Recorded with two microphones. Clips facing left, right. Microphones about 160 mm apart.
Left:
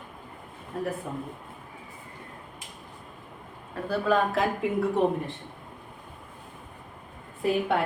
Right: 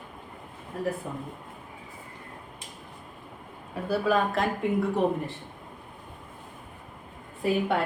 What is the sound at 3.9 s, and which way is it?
Speech, 5° right (ahead or behind).